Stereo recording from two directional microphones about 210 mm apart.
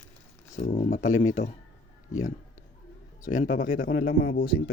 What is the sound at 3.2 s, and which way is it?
Speech, 40° left (ahead or behind).